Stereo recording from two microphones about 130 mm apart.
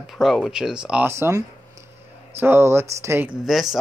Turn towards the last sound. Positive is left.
turn(degrees=0)  # may be behind; listen again after turning